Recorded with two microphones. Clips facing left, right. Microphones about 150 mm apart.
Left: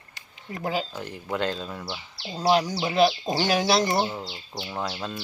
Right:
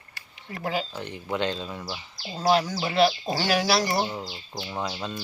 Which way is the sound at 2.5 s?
15° left (ahead or behind).